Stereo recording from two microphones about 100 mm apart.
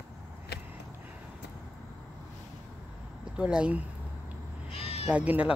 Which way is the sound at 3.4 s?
10° right (ahead or behind).